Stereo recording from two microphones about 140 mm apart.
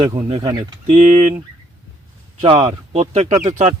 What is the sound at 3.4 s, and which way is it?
Speech, 60° right (ahead or behind).